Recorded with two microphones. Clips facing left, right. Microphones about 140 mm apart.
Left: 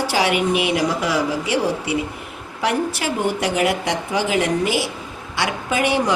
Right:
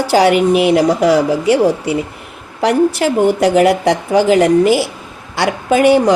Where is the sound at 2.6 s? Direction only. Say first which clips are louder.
Right 9 dB; 40° right (ahead or behind).